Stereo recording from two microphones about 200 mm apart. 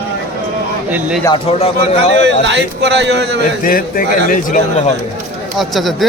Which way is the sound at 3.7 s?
45° left (ahead or behind).